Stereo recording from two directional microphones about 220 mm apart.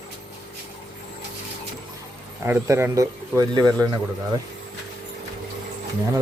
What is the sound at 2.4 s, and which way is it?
Speech, 10° right (ahead or behind).